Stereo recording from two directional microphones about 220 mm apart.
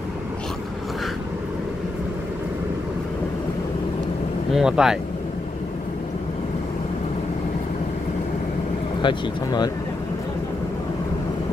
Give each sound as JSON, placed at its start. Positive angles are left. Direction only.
{"t": 4.5, "sound": "speech", "side_deg": -5}
{"t": 9.0, "sound": "speech", "side_deg": 20}